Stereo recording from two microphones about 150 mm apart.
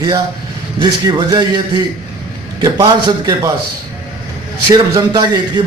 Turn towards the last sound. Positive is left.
turn(degrees=-30)  # may be behind; listen again after turning